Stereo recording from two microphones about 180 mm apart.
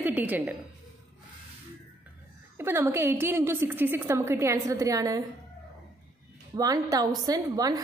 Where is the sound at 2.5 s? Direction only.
15° right (ahead or behind).